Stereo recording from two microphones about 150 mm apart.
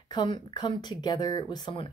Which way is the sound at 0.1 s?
30° left (ahead or behind).